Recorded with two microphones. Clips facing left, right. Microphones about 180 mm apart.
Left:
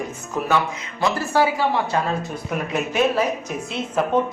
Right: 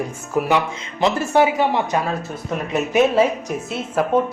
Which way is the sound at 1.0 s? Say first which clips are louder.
Right 3 dB; 20° right (ahead or behind).